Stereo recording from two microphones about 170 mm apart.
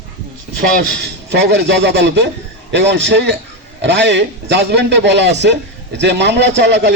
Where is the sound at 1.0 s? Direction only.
80° right.